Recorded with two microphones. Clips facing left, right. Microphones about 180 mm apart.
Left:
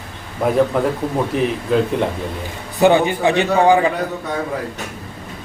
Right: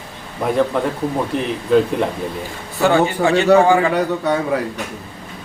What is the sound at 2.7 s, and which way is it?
A man's voice, 20° left (ahead or behind).